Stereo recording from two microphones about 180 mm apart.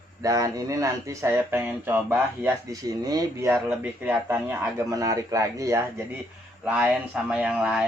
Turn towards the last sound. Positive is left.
turn(degrees=-5)  # may be behind; listen again after turning